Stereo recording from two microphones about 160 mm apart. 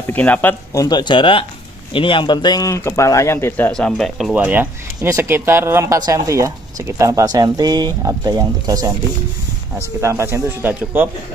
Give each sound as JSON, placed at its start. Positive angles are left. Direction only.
{"t": 0.1, "sound": "speech", "side_deg": 10}
{"t": 0.8, "sound": "a man's voice", "side_deg": 30}